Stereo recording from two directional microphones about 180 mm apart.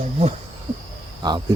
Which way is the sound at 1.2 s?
25° right (ahead or behind).